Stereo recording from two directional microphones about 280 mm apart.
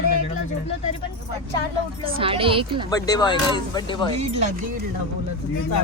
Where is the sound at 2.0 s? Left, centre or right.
Centre.